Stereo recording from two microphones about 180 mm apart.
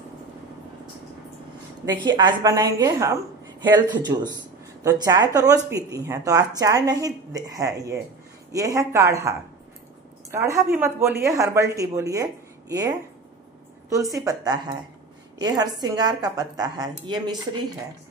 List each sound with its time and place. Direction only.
2.0 s speech: 25° right (ahead or behind)